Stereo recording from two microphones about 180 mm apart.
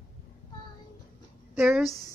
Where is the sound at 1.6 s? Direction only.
5° right (ahead or behind).